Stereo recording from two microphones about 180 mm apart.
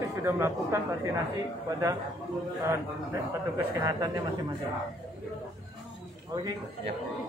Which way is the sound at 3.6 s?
20° right (ahead or behind).